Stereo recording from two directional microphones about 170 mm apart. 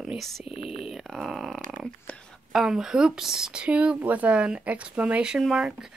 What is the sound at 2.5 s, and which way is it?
Speech, 5° right (ahead or behind).